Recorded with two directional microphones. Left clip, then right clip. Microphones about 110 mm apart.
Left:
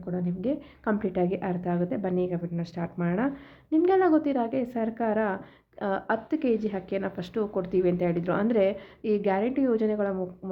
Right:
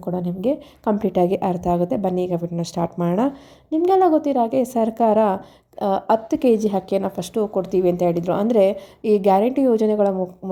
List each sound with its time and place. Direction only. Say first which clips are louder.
0.1 s a woman's voice: right 8 dB; 45° right (ahead or behind)
3.7 s a woman's voice: right 6 dB; 30° right (ahead or behind); by 7.1 s 60° right (ahead or behind)
7.5 s a woman's voice: right 6 dB; 35° right (ahead or behind); by 10.2 s 55° right (ahead or behind)